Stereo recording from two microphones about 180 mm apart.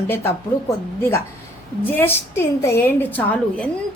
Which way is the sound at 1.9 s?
10° left (ahead or behind).